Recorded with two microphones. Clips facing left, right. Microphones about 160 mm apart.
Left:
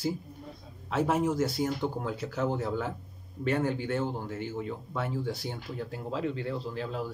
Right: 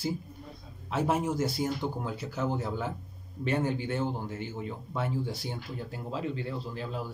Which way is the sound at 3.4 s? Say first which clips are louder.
Left 1 dB; 20° right (ahead or behind).